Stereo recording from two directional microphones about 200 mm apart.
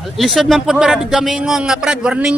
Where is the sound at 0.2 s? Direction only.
Centre (ahead or behind).